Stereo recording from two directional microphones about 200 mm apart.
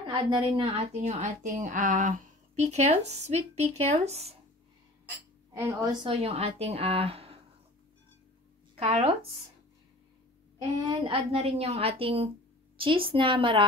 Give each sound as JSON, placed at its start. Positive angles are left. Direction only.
{"t": 0.0, "sound": "a woman's voice", "side_deg": -25}
{"t": 5.5, "sound": "a woman's voice", "side_deg": -15}
{"t": 6.2, "sound": "a woman's voice", "side_deg": -30}
{"t": 8.7, "sound": "a woman's voice", "side_deg": -30}
{"t": 10.9, "sound": "a woman's voice", "side_deg": -30}